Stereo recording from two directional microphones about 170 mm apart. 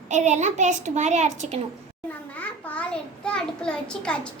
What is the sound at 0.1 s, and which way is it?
A child's voice, 45° right (ahead or behind).